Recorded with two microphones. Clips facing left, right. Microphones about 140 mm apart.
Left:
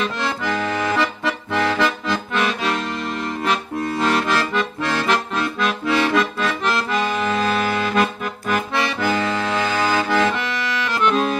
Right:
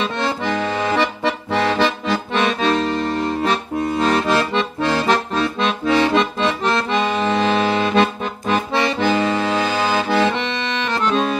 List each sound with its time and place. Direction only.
0.0 s accordion: 25° right (ahead or behind)